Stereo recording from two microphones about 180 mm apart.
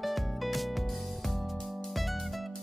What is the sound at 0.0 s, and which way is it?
Music, centre (ahead or behind).